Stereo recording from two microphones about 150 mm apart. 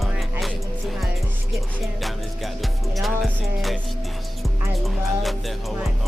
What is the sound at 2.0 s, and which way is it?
Music, centre (ahead or behind).